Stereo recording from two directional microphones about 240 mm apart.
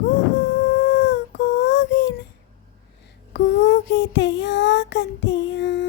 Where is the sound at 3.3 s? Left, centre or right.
Left.